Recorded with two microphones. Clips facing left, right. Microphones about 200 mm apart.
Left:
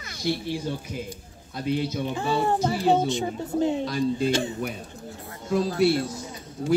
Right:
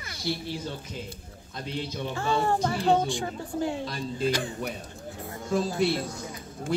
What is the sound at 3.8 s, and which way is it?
Speech, centre (ahead or behind).